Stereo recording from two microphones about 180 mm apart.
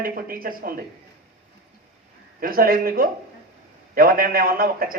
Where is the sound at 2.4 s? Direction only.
55° right (ahead or behind).